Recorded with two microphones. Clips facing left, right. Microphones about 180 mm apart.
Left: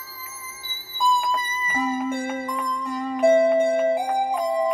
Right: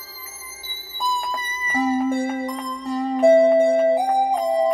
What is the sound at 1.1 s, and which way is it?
Music, 35° right (ahead or behind).